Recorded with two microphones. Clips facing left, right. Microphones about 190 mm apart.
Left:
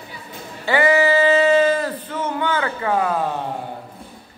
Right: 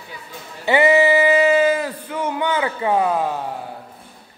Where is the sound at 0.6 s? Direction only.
20° right (ahead or behind).